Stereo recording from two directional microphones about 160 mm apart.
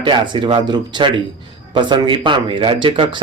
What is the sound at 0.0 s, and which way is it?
Speech, 30° right (ahead or behind).